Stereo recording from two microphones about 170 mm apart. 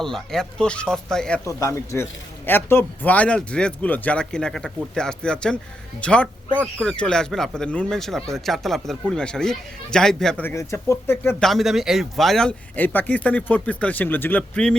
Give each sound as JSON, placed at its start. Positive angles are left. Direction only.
{"t": 0.0, "sound": "speech", "side_deg": 0}
{"t": 1.5, "sound": "a man's voice", "side_deg": 15}